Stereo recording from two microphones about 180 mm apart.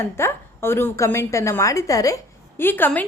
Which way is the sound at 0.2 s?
15° left (ahead or behind).